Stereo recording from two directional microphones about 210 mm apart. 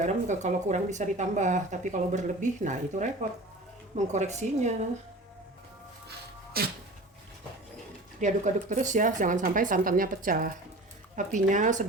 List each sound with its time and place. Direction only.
0.0 s speech: 35° right (ahead or behind)
6.1 s music: 45° right (ahead or behind)
8.2 s speech: 35° right (ahead or behind)